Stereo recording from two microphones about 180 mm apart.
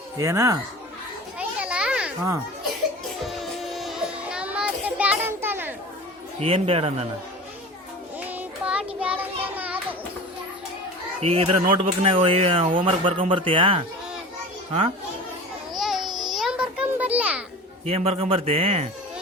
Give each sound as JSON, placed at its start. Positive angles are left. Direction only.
{"t": 0.2, "sound": "speech", "side_deg": -15}
{"t": 1.4, "sound": "children playing", "side_deg": -5}
{"t": 3.2, "sound": "music", "side_deg": 0}
{"t": 6.4, "sound": "speech", "side_deg": -30}
{"t": 8.2, "sound": "child singing", "side_deg": -10}
{"t": 11.2, "sound": "a man's voice", "side_deg": -35}
{"t": 15.8, "sound": "a sound", "side_deg": 0}
{"t": 17.8, "sound": "speech", "side_deg": -35}